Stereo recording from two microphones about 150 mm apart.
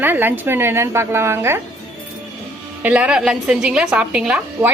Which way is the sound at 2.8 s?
5° right (ahead or behind).